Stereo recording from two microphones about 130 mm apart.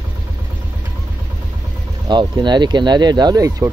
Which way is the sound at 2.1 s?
35° right (ahead or behind).